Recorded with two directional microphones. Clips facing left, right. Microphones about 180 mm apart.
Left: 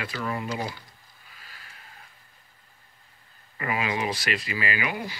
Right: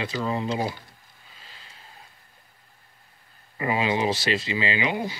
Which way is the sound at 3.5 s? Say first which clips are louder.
Right 4 dB; 25° right (ahead or behind).